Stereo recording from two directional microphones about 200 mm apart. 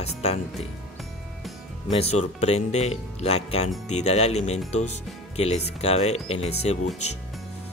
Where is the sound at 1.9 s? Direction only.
30° left (ahead or behind).